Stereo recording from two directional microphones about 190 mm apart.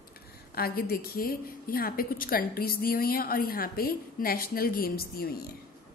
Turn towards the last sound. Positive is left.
turn(degrees=50)  # may be behind; listen again after turning